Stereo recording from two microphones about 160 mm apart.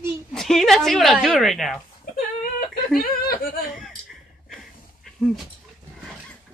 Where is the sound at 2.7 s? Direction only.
70° left (ahead or behind).